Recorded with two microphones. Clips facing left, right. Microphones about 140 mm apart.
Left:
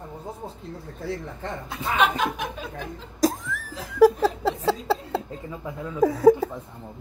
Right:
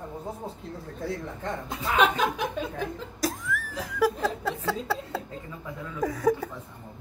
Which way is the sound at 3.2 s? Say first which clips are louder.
Left 6 dB; 40° left (ahead or behind).